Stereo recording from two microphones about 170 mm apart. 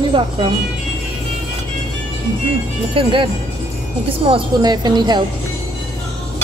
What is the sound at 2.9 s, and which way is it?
Speech, 30° right (ahead or behind).